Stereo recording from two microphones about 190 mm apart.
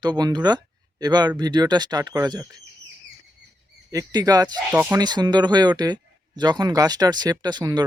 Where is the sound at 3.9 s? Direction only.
20° right (ahead or behind).